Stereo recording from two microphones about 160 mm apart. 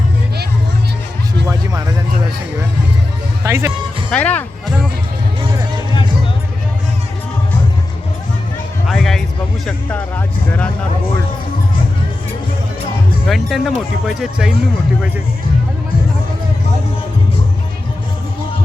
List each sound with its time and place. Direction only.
1.5 s music: 20° right (ahead or behind)
3.4 s music: 15° right (ahead or behind)
4.1 s speech: 10° left (ahead or behind)
8.9 s music: centre (ahead or behind)
13.2 s speech: centre (ahead or behind)